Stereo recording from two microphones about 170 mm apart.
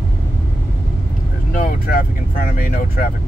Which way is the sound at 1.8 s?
55° left (ahead or behind).